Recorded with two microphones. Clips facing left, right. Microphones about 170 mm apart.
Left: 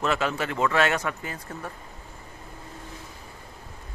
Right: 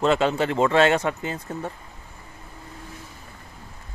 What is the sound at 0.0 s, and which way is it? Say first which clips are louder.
Speech: right 6 dB; 30° right (ahead or behind).